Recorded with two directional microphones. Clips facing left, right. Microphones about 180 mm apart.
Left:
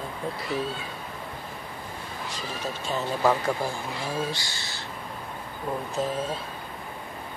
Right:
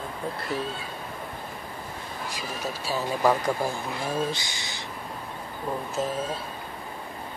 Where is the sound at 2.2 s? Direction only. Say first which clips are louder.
Even; 10° right (ahead or behind).